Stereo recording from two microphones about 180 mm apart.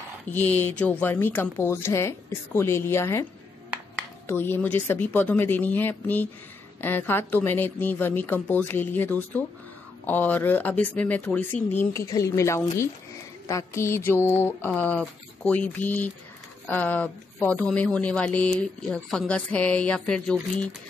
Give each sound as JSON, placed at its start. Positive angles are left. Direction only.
{"t": 0.3, "sound": "speech", "side_deg": 10}
{"t": 4.3, "sound": "speech", "side_deg": 10}